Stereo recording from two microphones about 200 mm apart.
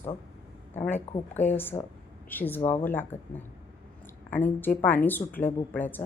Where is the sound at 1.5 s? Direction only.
10° left (ahead or behind).